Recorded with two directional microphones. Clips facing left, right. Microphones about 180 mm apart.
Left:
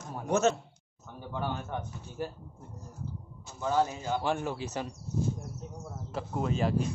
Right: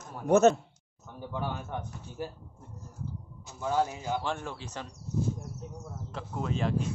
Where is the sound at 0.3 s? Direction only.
55° right (ahead or behind).